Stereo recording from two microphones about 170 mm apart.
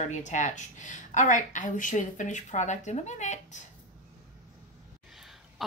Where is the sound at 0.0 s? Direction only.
45° left (ahead or behind).